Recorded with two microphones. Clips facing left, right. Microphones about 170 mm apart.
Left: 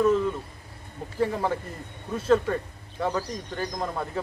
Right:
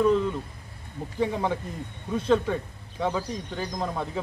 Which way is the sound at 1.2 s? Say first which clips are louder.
Left 1 dB; centre (ahead or behind).